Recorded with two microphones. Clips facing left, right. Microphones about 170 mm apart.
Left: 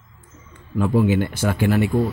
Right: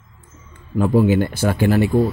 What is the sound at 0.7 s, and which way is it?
A man's voice, 40° right (ahead or behind).